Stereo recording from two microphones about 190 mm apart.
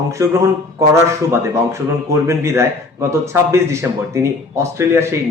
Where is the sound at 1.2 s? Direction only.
15° right (ahead or behind).